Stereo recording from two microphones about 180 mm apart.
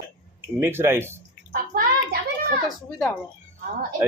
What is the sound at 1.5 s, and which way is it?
Bathtub, 55° right (ahead or behind).